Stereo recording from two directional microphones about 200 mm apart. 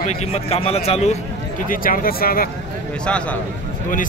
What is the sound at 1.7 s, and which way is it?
Speech, 45° left (ahead or behind).